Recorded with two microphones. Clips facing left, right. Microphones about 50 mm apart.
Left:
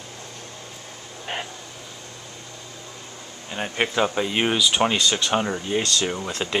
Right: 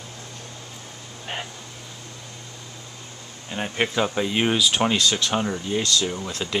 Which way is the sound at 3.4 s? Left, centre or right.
Centre.